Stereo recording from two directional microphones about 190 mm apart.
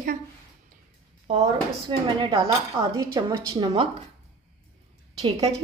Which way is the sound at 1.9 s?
25° right (ahead or behind).